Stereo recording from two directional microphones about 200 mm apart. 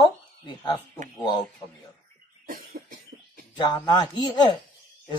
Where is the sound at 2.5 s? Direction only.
45° right (ahead or behind).